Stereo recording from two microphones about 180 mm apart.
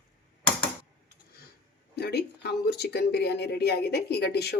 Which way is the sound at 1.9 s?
65° left (ahead or behind).